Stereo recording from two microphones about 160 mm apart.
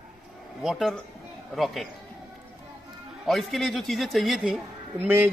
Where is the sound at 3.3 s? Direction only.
Centre (ahead or behind).